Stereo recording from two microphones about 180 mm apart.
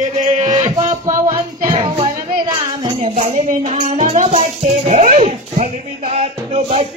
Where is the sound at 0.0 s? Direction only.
45° right (ahead or behind).